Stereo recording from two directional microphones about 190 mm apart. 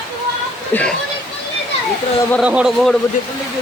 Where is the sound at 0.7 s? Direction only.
10° left (ahead or behind).